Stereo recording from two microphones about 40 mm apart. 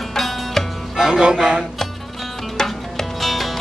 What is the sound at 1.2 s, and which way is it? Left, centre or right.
Speech, right.